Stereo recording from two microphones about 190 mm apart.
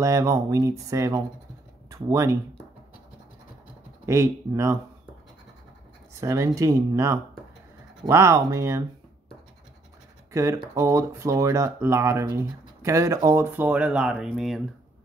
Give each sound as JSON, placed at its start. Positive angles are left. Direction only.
{"t": 0.0, "sound": "speech", "side_deg": -15}
{"t": 4.0, "sound": "speech", "side_deg": -15}
{"t": 6.2, "sound": "speech", "side_deg": -15}
{"t": 10.3, "sound": "speech", "side_deg": -15}